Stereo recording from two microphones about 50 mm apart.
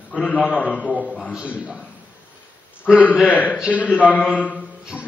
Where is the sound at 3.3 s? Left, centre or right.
Left.